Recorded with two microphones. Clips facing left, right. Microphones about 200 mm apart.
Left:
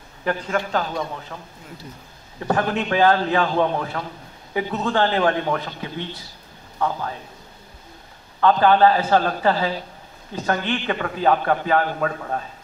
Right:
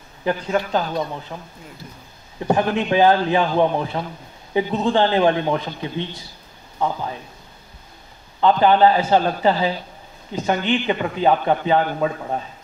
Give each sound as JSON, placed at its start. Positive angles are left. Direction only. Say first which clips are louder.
{"t": 0.2, "sound": "a man's voice", "louder": "right 2 dB", "side_deg": -20}
{"t": 2.4, "sound": "a man's voice", "louder": "right 3 dB", "side_deg": -15}
{"t": 8.4, "sound": "a man's voice", "louder": "right 1 dB", "side_deg": -20}